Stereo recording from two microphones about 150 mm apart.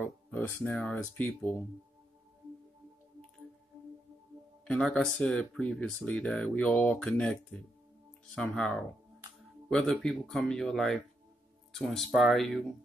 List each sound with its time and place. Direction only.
0.0 s speech: 10° left (ahead or behind)
4.6 s speech: 5° left (ahead or behind)